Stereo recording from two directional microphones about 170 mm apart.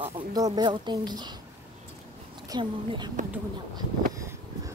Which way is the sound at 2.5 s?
25° right (ahead or behind).